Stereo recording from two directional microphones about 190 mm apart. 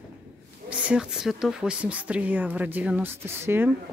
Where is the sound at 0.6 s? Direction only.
5° right (ahead or behind).